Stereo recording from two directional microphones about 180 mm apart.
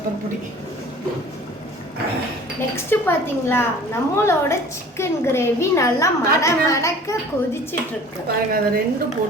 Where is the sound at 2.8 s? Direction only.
15° left (ahead or behind).